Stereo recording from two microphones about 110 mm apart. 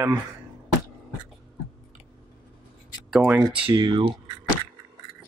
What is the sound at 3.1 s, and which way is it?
Speech, 5° right (ahead or behind).